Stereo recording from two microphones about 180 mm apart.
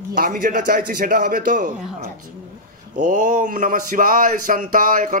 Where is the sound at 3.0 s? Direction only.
45° right (ahead or behind).